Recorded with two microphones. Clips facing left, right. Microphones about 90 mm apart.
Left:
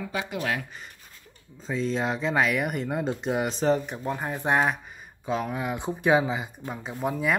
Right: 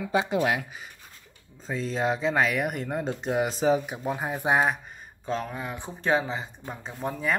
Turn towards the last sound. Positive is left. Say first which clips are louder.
# left 2 dB
turn(degrees=5)  # may be behind; listen again after turning